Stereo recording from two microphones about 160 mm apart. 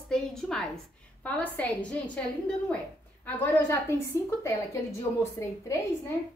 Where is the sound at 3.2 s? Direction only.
15° left (ahead or behind).